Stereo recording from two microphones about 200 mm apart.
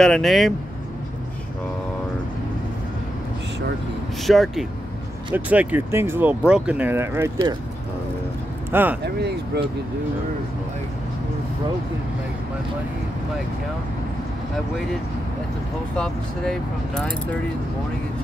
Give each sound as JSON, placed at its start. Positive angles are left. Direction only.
{"t": 0.0, "sound": "speech", "side_deg": 0}
{"t": 4.2, "sound": "speech", "side_deg": 0}
{"t": 9.0, "sound": "speech", "side_deg": -55}
{"t": 16.0, "sound": "speech", "side_deg": 5}